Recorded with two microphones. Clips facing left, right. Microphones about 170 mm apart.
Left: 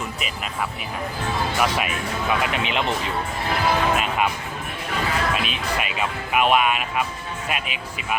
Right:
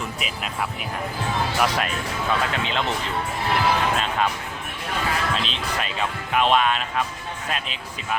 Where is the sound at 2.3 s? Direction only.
15° left (ahead or behind).